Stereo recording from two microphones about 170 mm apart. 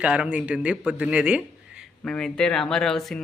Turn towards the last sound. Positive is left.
turn(degrees=5)  # may be behind; listen again after turning